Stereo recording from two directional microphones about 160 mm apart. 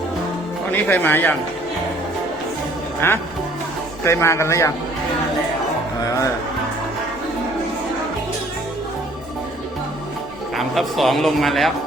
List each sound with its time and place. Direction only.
0.7 s a man's voice: 10° left (ahead or behind)
3.0 s a man's voice: 15° left (ahead or behind)
10.5 s a man's voice: centre (ahead or behind)